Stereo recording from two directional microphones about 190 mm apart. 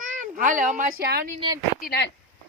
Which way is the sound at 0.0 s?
45° right (ahead or behind).